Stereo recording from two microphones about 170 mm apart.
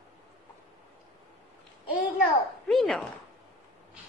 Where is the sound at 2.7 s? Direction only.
Centre (ahead or behind).